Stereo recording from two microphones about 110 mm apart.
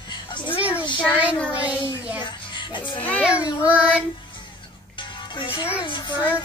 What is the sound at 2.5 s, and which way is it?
Music, 45° left (ahead or behind).